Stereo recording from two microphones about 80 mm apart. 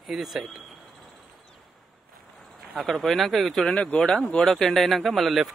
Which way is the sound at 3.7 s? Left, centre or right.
Centre.